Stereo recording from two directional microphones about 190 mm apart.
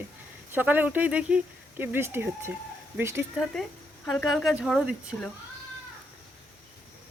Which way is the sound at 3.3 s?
Centre (ahead or behind).